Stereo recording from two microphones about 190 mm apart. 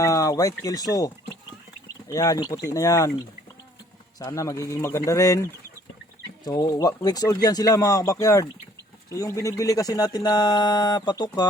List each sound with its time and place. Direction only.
0.0 s speech: 15° left (ahead or behind)
4.2 s speech: 20° left (ahead or behind)